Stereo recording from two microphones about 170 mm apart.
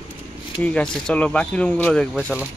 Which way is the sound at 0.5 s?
5° left (ahead or behind).